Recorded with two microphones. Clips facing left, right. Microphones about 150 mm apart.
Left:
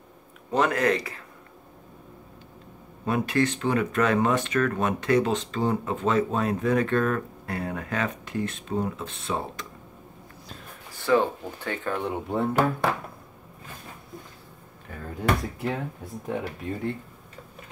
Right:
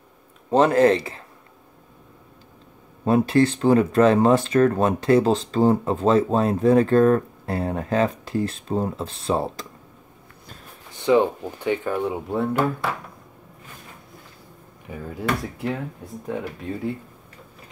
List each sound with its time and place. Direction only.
0.5 s speech: 30° right (ahead or behind)
3.1 s speech: 30° right (ahead or behind)
10.9 s speech: 20° right (ahead or behind); by 12.4 s 5° right (ahead or behind)
14.9 s speech: 10° right (ahead or behind)